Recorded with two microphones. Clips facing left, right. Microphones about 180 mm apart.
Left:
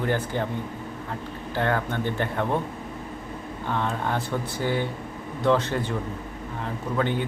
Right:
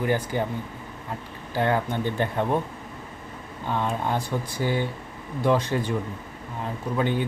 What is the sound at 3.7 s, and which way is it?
Speech, 15° right (ahead or behind).